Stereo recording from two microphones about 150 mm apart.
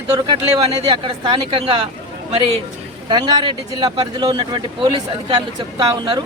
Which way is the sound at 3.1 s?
25° right (ahead or behind).